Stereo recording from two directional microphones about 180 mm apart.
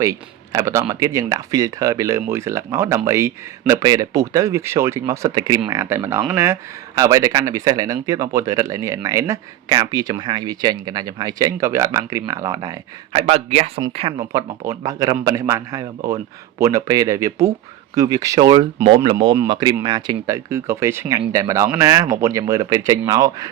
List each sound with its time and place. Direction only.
0.0 s speech: 20° right (ahead or behind)
13.1 s a man's voice: 35° right (ahead or behind)
14.3 s speech: 20° right (ahead or behind)